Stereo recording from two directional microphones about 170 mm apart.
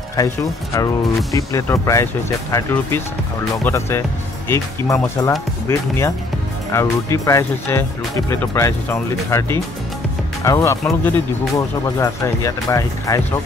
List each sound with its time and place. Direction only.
0.1 s speech: 20° left (ahead or behind)